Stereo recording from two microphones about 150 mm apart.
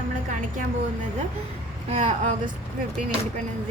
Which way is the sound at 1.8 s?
50° right (ahead or behind).